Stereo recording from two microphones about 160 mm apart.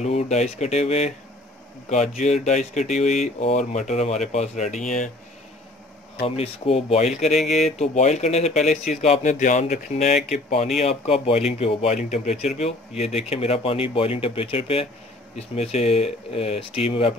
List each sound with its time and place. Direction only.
0.0 s speech: 45° left (ahead or behind)
6.2 s speech: 40° left (ahead or behind)
7.3 s speech: centre (ahead or behind)
7.6 s speech: 45° left (ahead or behind)